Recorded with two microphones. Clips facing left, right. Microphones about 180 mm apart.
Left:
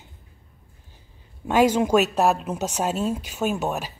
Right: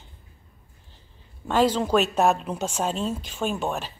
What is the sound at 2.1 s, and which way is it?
Speech, centre (ahead or behind).